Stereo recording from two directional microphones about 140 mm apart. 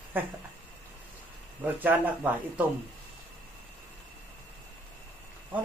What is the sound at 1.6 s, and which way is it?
Speech, 15° right (ahead or behind).